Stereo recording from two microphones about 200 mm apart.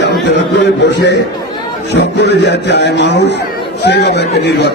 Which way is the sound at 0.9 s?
60° left (ahead or behind).